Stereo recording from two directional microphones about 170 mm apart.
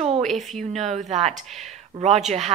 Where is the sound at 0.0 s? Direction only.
40° right (ahead or behind).